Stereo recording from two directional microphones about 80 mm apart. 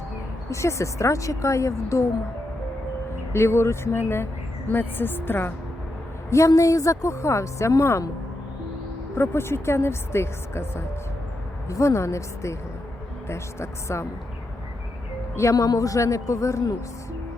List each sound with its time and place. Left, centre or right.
0.5 s a woman's voice: left
3.3 s a woman's voice: left
6.3 s a woman's voice: left
9.1 s a woman's voice: left
15.4 s a man's voice: left